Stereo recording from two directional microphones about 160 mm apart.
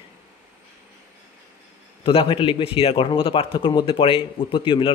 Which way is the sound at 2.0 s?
35° left (ahead or behind).